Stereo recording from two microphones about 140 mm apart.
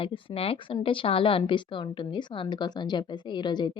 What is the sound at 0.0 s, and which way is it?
Speech, 40° left (ahead or behind).